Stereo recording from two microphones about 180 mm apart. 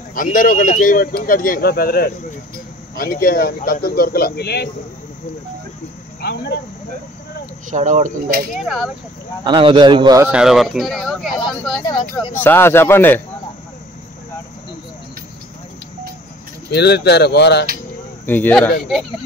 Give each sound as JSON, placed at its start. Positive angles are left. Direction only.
{"t": 0.1, "sound": "speech", "side_deg": 50}
{"t": 6.2, "sound": "speech", "side_deg": 65}
{"t": 7.7, "sound": "speech", "side_deg": -45}
{"t": 8.5, "sound": "speech", "side_deg": 0}
{"t": 9.4, "sound": "a man's voice", "side_deg": -25}
{"t": 10.2, "sound": "speech", "side_deg": -5}
{"t": 11.9, "sound": "speech", "side_deg": 25}
{"t": 12.4, "sound": "speech", "side_deg": 10}
{"t": 16.7, "sound": "speech", "side_deg": 65}
{"t": 18.2, "sound": "speech", "side_deg": 10}